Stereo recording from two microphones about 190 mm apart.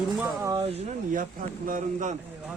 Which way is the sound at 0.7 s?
40° right (ahead or behind).